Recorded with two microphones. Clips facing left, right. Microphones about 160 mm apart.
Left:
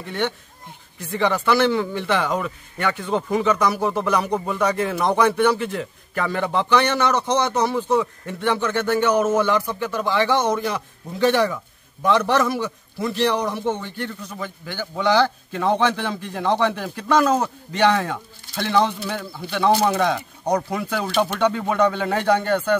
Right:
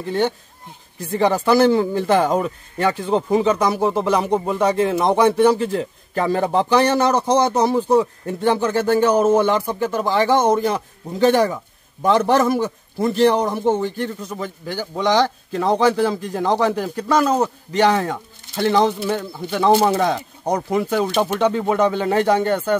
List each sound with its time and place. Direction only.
0.0 s a man's voice: 35° right (ahead or behind)
18.9 s speech: 20° right (ahead or behind)